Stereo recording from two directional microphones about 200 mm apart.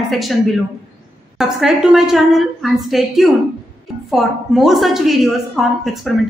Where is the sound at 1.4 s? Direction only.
Centre (ahead or behind).